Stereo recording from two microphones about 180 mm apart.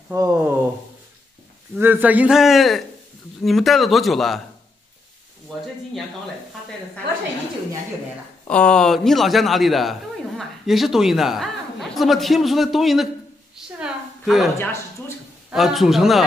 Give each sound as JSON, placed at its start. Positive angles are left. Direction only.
{"t": 0.1, "sound": "speech", "side_deg": -15}
{"t": 1.8, "sound": "a man's voice", "side_deg": -10}
{"t": 8.5, "sound": "a man's voice", "side_deg": 5}
{"t": 13.6, "sound": "a sound", "side_deg": -5}
{"t": 14.6, "sound": "speech", "side_deg": 15}
{"t": 15.5, "sound": "a man's voice", "side_deg": 0}